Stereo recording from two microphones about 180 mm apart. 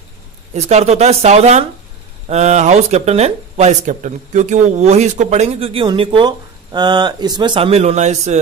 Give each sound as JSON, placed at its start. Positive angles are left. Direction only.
{"t": 0.6, "sound": "speech", "side_deg": -35}